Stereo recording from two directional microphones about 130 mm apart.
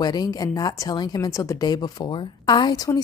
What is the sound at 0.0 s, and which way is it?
Speech, 30° left (ahead or behind).